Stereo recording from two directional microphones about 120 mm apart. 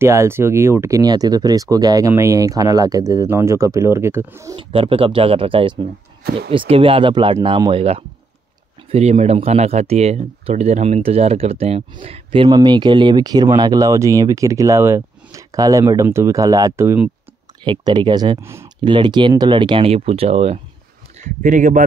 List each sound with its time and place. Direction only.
0.0 s speech: 20° right (ahead or behind)
4.6 s speech: 50° right (ahead or behind)
8.9 s speech: 65° right (ahead or behind); by 17.0 s 20° right (ahead or behind)
17.6 s speech: 40° right (ahead or behind)
18.4 s speech: 20° right (ahead or behind)
18.8 s speech: 40° right (ahead or behind); by 20.6 s 60° right (ahead or behind)
21.2 s speech: 90° right